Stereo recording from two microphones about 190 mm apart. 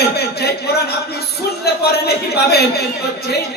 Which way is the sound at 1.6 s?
55° left (ahead or behind).